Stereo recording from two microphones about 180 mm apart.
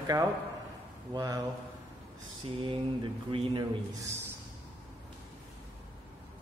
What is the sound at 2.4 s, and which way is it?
Speech, 30° right (ahead or behind).